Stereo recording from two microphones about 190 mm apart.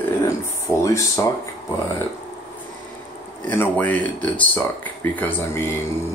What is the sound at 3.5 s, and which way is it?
Speech, 10° left (ahead or behind).